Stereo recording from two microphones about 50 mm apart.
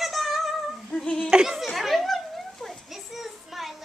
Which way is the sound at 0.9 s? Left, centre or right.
Left.